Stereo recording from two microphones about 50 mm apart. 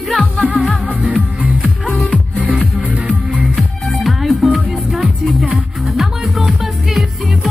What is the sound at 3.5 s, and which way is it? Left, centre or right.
Music, centre.